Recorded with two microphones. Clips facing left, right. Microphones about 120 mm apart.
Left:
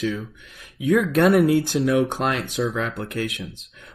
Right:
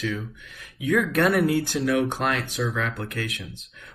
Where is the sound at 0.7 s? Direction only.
30° left (ahead or behind).